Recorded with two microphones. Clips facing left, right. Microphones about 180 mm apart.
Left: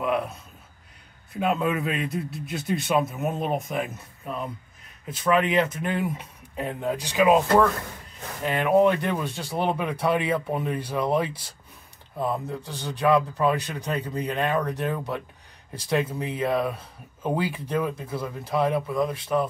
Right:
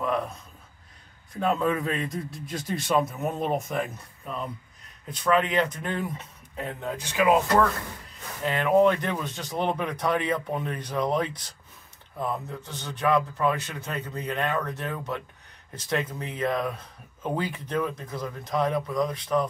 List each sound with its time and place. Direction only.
0.0 s a sound: 10° left (ahead or behind)
1.3 s speech: 10° left (ahead or behind)
5.0 s speech: 5° left (ahead or behind); by 7.4 s 20° left (ahead or behind)
8.5 s speech: 10° left (ahead or behind)